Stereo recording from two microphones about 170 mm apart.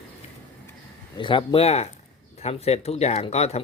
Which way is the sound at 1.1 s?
30° left (ahead or behind).